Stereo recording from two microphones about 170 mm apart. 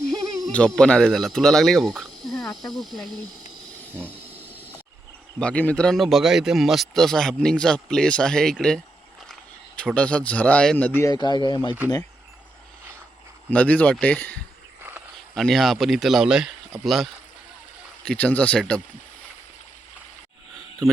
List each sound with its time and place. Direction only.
0.3 s speech: 5° left (ahead or behind)
4.1 s a sound: 10° right (ahead or behind)
5.4 s a man's voice: 5° left (ahead or behind)
11.0 s speech: 25° left (ahead or behind)
13.5 s a man's voice: 10° left (ahead or behind)
20.8 s a man's voice: centre (ahead or behind)